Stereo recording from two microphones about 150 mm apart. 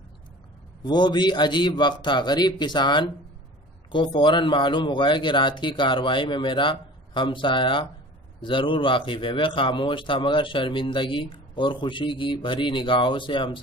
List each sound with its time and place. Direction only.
0.8 s a man's voice: 30° left (ahead or behind)